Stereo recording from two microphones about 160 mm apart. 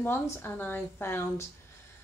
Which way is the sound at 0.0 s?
15° left (ahead or behind).